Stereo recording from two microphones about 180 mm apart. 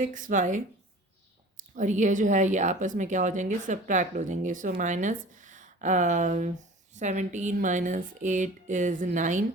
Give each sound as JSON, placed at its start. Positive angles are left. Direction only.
{"t": 0.0, "sound": "speech", "side_deg": -45}
{"t": 1.7, "sound": "speech", "side_deg": -45}